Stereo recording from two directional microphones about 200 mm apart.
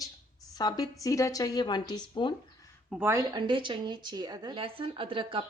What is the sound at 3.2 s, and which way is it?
Speech, 25° right (ahead or behind).